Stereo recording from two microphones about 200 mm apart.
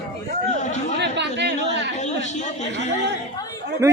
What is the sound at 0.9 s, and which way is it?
Chatter, 60° right (ahead or behind).